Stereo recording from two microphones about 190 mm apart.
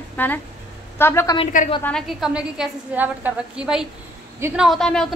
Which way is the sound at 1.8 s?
Centre (ahead or behind).